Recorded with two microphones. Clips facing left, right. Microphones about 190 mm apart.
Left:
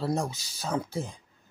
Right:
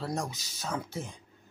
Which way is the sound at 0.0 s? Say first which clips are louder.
Left 5 dB; 30° left (ahead or behind).